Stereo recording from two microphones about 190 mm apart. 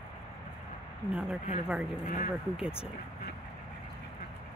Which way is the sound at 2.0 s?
40° left (ahead or behind).